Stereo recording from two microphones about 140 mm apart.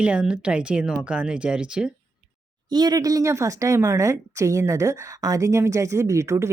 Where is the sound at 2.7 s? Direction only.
30° right (ahead or behind).